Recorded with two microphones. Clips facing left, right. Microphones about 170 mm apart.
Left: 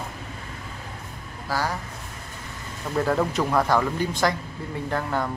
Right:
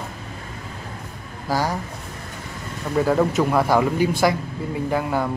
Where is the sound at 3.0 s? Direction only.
5° right (ahead or behind).